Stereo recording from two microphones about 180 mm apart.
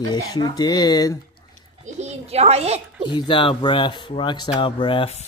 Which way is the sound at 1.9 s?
35° right (ahead or behind).